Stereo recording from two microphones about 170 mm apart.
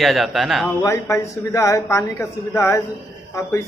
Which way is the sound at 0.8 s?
15° left (ahead or behind).